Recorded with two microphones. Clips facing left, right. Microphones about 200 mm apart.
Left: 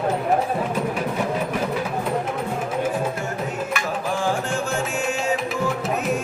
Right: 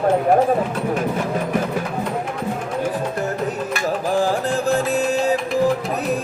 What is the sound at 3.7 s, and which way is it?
Music, 35° right (ahead or behind).